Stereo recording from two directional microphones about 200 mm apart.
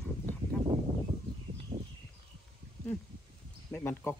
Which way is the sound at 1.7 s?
30° right (ahead or behind).